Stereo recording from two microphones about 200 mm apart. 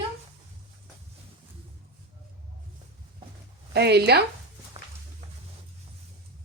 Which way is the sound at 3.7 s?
55° right (ahead or behind).